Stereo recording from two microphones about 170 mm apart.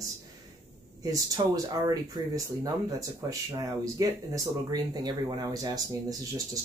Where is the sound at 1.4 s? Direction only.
30° right (ahead or behind).